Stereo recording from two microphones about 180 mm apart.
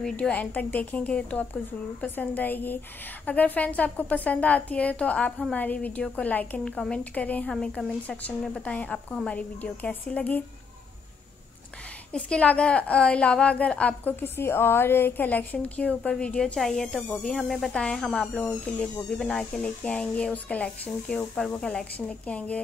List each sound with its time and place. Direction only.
0.0 s a woman's voice: 5° left (ahead or behind)
12.1 s a woman's voice: 5° left (ahead or behind)